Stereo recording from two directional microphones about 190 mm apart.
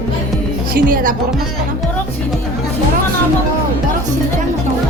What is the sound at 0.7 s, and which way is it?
Music, 45° right (ahead or behind).